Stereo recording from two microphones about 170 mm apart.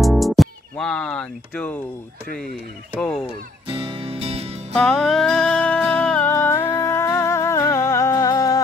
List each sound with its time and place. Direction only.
0.0 s music: centre (ahead or behind)
3.0 s speech: 15° left (ahead or behind)
3.6 s music: 35° right (ahead or behind)
4.7 s music: 5° left (ahead or behind); by 8.6 s 20° left (ahead or behind)